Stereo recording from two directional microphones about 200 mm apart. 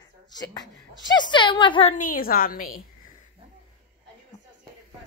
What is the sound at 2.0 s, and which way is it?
Speech, 45° left (ahead or behind).